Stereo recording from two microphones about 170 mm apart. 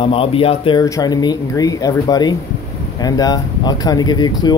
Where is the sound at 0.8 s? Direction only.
20° left (ahead or behind).